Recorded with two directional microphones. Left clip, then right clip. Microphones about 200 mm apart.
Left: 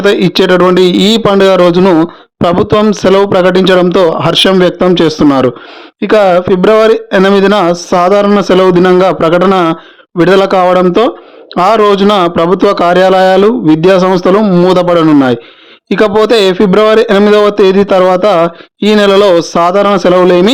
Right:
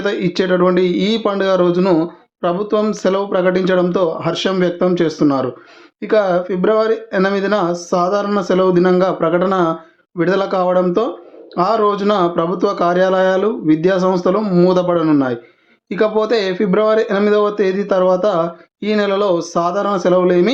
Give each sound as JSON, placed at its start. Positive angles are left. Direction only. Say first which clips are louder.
{"t": 0.0, "sound": "speech", "louder": "left 10 dB", "side_deg": 45}